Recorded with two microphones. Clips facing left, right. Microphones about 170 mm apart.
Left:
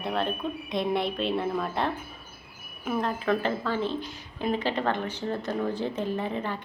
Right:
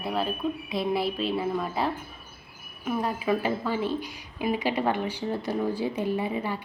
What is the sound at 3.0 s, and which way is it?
Speech, 10° right (ahead or behind).